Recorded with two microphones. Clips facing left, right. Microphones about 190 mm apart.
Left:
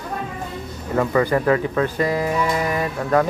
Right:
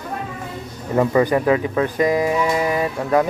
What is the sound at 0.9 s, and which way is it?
Speech, 20° right (ahead or behind).